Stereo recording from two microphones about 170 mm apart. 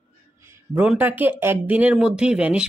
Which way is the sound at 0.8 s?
10° right (ahead or behind).